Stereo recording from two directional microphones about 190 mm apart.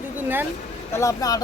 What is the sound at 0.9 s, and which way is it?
Speech, 15° left (ahead or behind).